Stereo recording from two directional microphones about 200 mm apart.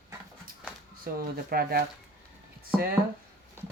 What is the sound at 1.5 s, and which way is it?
Speech, 50° right (ahead or behind).